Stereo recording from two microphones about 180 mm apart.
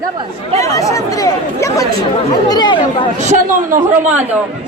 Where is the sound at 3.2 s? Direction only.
40° right (ahead or behind).